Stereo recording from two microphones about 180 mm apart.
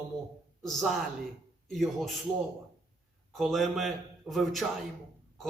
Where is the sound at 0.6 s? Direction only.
Centre (ahead or behind).